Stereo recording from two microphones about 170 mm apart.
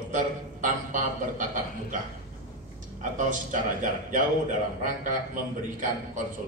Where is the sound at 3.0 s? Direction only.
50° right (ahead or behind).